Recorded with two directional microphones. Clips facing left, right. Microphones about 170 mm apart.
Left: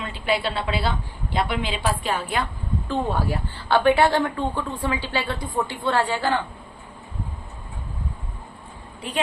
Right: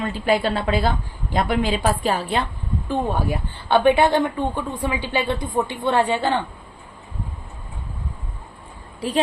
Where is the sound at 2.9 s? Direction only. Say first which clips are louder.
Right 2 dB; 15° right (ahead or behind).